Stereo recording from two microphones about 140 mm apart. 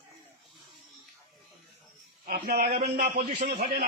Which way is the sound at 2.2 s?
90° right.